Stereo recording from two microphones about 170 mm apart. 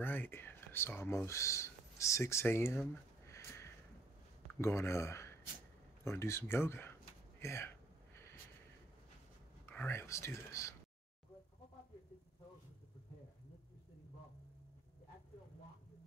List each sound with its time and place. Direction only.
0.0 s speech: 10° left (ahead or behind)
9.7 s speech: 10° left (ahead or behind)